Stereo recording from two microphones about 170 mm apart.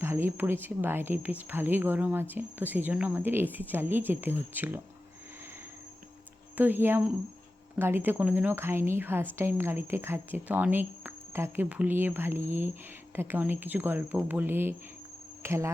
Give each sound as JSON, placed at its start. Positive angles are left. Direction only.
{"t": 0.0, "sound": "speech", "side_deg": -15}
{"t": 6.6, "sound": "speech", "side_deg": -10}